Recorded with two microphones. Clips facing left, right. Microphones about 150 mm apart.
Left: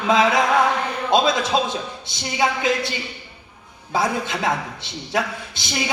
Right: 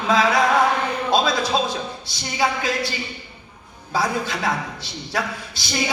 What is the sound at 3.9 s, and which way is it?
Speech, 20° left (ahead or behind).